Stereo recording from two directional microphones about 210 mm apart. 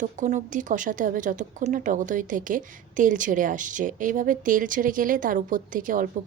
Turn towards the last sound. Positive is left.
turn(degrees=-40)  # may be behind; listen again after turning